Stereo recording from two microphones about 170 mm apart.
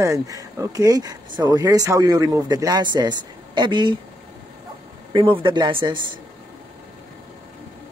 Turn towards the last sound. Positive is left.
turn(degrees=-30)  # may be behind; listen again after turning